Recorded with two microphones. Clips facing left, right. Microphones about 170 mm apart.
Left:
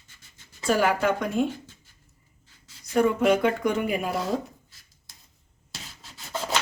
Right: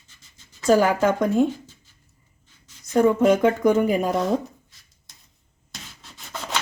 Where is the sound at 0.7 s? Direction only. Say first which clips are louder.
Right 5 dB; 45° right (ahead or behind).